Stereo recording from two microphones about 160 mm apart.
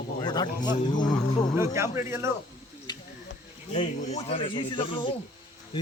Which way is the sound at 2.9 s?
25° left (ahead or behind).